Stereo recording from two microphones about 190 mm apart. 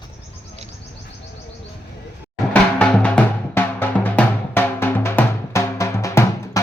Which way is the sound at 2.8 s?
5° left (ahead or behind).